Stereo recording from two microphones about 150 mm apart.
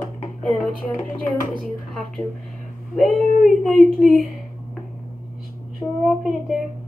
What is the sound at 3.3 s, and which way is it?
Speech, 70° left (ahead or behind).